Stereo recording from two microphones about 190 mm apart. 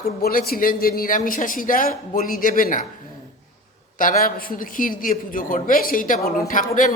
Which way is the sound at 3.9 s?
45° left (ahead or behind).